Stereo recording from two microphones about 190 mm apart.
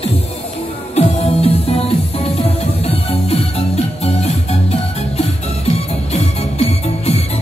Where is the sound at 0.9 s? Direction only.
35° left (ahead or behind).